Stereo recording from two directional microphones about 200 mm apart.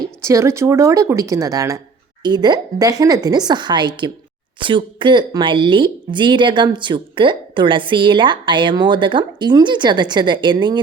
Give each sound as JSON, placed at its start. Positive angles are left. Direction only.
{"t": 0.0, "sound": "speech", "side_deg": -15}